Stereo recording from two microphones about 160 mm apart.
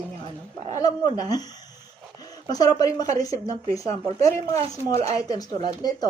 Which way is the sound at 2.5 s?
25° left (ahead or behind).